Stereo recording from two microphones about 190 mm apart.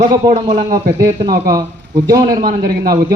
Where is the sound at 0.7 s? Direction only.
15° right (ahead or behind).